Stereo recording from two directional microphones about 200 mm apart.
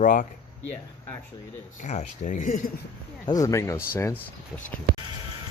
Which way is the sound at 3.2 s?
20° left (ahead or behind).